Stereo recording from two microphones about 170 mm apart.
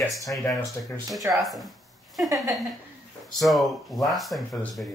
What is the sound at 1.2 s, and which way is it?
Speech, 20° right (ahead or behind).